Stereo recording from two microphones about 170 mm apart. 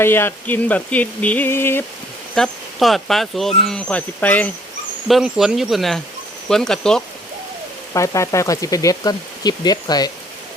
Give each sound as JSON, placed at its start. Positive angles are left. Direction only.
{"t": 0.0, "sound": "a sound", "side_deg": 15}
{"t": 2.3, "sound": "speech", "side_deg": 0}
{"t": 5.0, "sound": "speech", "side_deg": 0}
{"t": 7.9, "sound": "speech", "side_deg": 20}